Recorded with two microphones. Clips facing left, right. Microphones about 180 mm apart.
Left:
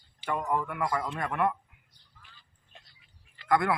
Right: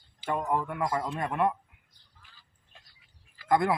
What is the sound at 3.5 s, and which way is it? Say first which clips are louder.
Speech: right 1 dB; 25° right (ahead or behind).